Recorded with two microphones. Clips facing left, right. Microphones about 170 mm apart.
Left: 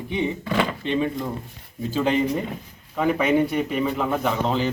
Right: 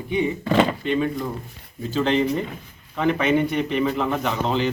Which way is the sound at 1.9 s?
10° left (ahead or behind).